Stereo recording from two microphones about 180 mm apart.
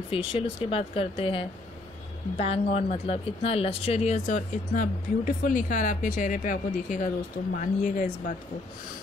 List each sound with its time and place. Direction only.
0.1 s speech: 30° left (ahead or behind)